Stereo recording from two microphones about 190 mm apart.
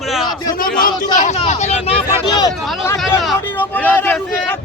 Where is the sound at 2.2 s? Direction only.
20° left (ahead or behind).